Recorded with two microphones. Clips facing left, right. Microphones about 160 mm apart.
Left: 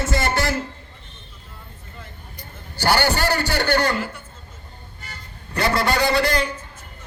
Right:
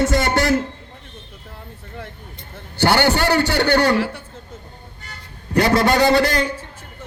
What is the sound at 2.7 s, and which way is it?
A man's voice, 60° right (ahead or behind).